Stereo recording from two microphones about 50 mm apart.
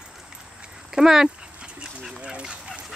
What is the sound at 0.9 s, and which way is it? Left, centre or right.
Speech, centre.